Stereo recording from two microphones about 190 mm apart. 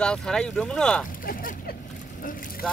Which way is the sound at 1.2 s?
50° left (ahead or behind).